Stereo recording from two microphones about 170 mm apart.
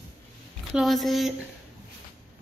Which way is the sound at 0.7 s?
Centre (ahead or behind).